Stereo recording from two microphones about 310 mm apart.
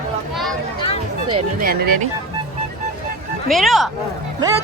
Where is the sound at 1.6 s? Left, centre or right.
Right.